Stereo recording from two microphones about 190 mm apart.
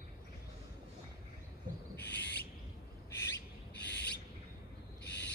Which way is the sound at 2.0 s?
65° left (ahead or behind).